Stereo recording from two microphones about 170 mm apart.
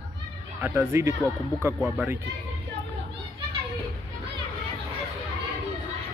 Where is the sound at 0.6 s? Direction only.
15° right (ahead or behind).